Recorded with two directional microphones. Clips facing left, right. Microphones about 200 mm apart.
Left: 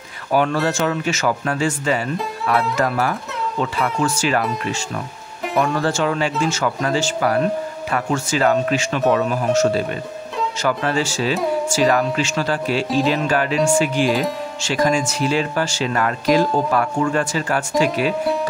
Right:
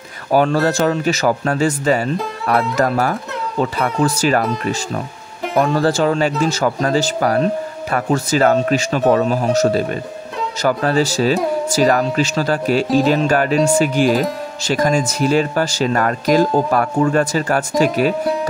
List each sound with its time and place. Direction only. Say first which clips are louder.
0.3 s speech: right 4 dB; 40° right (ahead or behind)
5.4 s music: right 3 dB; centre (ahead or behind)
5.7 s speech: right 4 dB; 35° right (ahead or behind)